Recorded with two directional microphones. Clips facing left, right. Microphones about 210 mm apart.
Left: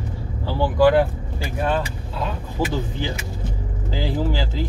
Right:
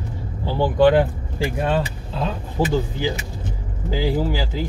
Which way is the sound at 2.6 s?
15° right (ahead or behind).